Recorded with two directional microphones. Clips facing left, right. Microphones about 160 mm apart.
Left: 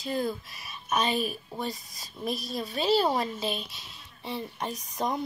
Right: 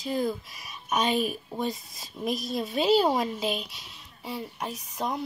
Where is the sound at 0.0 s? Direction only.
10° right (ahead or behind).